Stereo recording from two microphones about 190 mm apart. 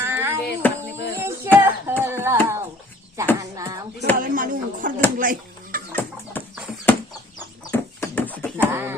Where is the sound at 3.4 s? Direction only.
20° right (ahead or behind).